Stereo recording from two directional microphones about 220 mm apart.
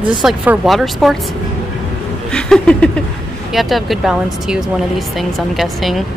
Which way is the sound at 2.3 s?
5° left (ahead or behind).